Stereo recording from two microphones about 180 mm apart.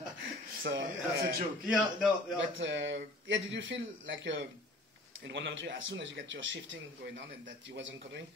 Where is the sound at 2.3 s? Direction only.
90° right.